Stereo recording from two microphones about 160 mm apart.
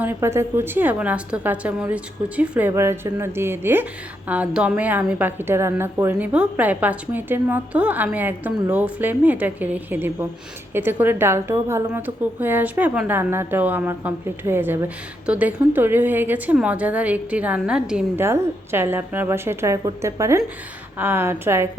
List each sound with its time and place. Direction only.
0.0 s a woman's voice: 15° right (ahead or behind)